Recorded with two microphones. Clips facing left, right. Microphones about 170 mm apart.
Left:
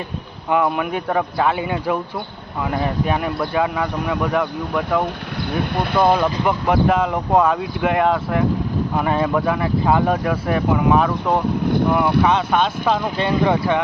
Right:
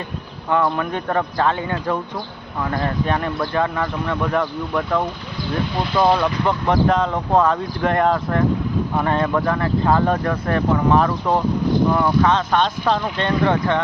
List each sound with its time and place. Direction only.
0.5 s speech: 10° left (ahead or behind)
5.5 s speech: 55° left (ahead or behind)
6.0 s speech: 10° left (ahead or behind)